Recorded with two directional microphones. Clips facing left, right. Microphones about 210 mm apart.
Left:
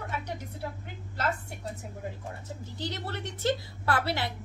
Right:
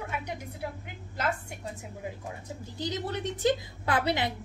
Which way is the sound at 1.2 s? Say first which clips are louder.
Even; 15° right (ahead or behind).